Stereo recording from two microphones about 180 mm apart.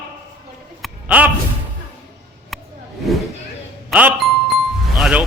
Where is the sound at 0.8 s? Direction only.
10° right (ahead or behind).